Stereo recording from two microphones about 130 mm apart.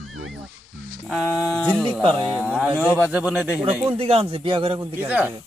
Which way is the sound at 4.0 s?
50° right (ahead or behind).